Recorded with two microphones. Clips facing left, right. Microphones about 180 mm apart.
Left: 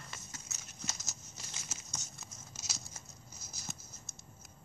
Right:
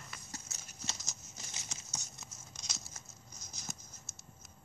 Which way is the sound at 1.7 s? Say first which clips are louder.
Left 1 dB; 5° left (ahead or behind).